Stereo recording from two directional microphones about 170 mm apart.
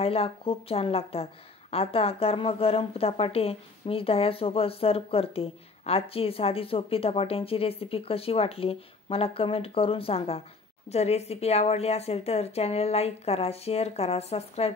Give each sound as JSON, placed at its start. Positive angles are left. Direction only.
{"t": 0.0, "sound": "a woman's voice", "side_deg": 35}